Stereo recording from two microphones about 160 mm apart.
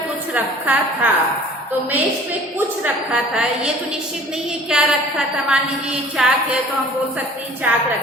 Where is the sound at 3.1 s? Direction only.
5° right (ahead or behind).